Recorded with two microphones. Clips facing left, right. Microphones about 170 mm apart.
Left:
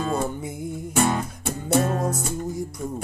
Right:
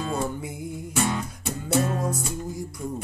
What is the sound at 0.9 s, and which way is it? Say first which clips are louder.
Music: left 4 dB; 50° left (ahead or behind).